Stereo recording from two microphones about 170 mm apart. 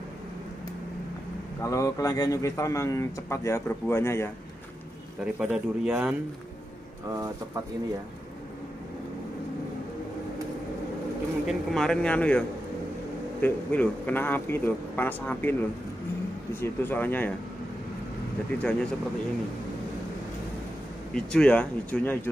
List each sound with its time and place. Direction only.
1.6 s a man's voice: 20° left (ahead or behind)
5.2 s speech: 5° right (ahead or behind)
7.1 s speech: 20° right (ahead or behind)
11.4 s a man's voice: centre (ahead or behind)
16.5 s a man's voice: 15° left (ahead or behind)
21.1 s a man's voice: 5° left (ahead or behind)